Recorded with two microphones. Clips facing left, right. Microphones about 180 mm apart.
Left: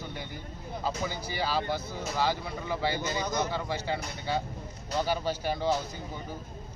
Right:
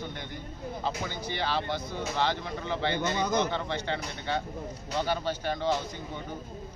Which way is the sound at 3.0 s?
60° right (ahead or behind).